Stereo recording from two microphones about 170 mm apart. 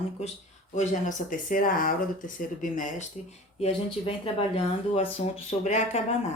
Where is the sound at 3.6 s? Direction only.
35° left (ahead or behind).